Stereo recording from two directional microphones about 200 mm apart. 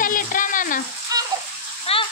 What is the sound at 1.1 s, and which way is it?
Water, 20° right (ahead or behind).